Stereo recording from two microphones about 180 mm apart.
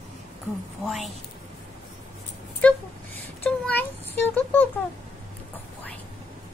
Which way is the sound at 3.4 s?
10° left (ahead or behind).